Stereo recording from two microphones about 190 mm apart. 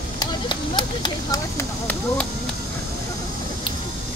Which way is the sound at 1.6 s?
10° left (ahead or behind).